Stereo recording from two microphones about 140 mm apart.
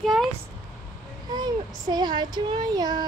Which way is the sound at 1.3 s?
30° right (ahead or behind).